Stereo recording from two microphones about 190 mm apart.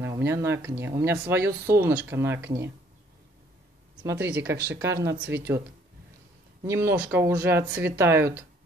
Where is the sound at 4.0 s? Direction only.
15° right (ahead or behind).